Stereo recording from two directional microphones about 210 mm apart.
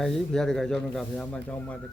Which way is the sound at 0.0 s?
Centre (ahead or behind).